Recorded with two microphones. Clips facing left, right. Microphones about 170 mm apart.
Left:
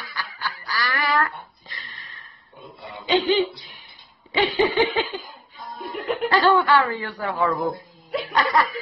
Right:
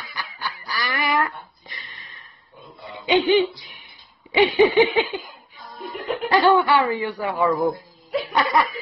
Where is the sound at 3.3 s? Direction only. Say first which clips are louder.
Right 3 dB; 15° right (ahead or behind).